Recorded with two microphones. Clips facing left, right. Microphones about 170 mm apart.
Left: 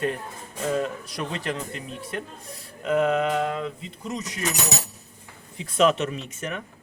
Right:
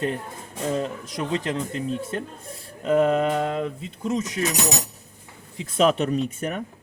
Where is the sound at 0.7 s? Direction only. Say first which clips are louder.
Even; 25° right (ahead or behind).